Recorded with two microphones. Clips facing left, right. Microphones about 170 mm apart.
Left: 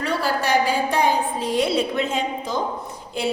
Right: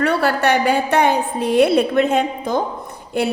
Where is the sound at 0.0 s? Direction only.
65° right (ahead or behind).